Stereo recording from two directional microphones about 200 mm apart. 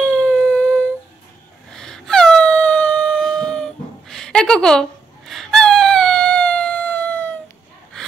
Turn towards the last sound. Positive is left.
turn(degrees=10)  # may be behind; listen again after turning